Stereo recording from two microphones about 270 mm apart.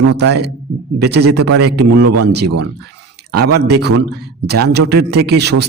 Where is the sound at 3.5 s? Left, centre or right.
Right.